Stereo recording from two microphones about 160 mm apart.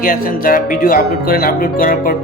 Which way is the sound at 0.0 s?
60° left (ahead or behind).